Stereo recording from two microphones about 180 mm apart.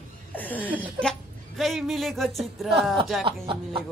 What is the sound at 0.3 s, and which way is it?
Laughter, 10° left (ahead or behind).